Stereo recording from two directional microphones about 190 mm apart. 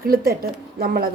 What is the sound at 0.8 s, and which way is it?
Speech, 50° right (ahead or behind).